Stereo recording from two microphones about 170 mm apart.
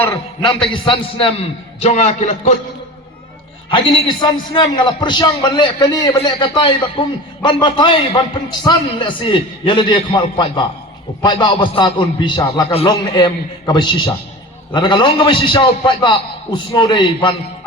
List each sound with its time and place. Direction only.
0.4 s a man's voice: 30° left (ahead or behind)
3.7 s a man's voice: 30° left (ahead or behind)